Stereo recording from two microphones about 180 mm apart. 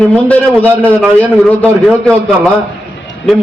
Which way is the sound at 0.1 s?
10° left (ahead or behind).